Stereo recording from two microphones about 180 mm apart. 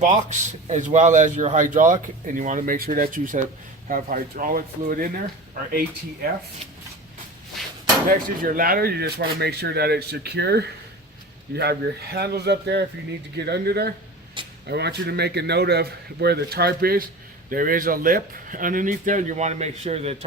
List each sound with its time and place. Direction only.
0.0 s a man's voice: 40° right (ahead or behind)
8.1 s speech: 50° right (ahead or behind)
14.4 s vehicle: 25° right (ahead or behind)
14.7 s a man's voice: 65° right (ahead or behind); by 20.1 s 35° right (ahead or behind)